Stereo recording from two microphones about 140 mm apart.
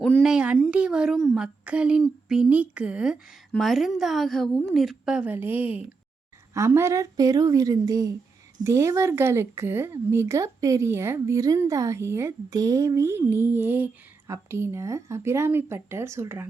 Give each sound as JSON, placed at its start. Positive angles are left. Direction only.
{"t": 0.0, "sound": "a woman's voice", "side_deg": 0}